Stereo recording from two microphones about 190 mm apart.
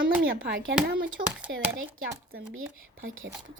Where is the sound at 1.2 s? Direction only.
45° right (ahead or behind).